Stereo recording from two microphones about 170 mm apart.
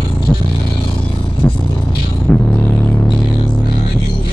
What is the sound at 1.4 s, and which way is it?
Vehicle, 5° left (ahead or behind).